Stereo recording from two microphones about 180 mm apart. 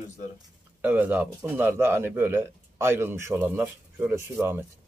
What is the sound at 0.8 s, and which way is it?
A man's voice, 10° right (ahead or behind).